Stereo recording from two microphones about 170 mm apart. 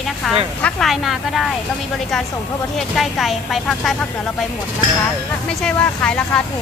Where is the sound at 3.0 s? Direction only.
Centre (ahead or behind).